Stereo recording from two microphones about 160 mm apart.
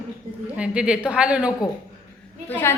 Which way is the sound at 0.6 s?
5° right (ahead or behind).